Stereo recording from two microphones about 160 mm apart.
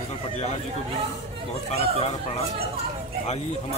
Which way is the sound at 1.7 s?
40° left (ahead or behind).